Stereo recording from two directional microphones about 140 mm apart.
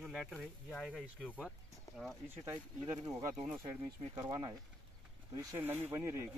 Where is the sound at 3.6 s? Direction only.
30° right (ahead or behind).